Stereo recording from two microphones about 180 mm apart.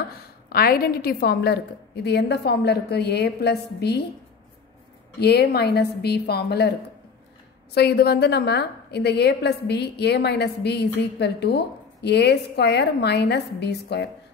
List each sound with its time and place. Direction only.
0.5 s a woman's voice: 60° left (ahead or behind)
5.2 s a woman's voice: 65° left (ahead or behind)
7.7 s a woman's voice: 65° left (ahead or behind)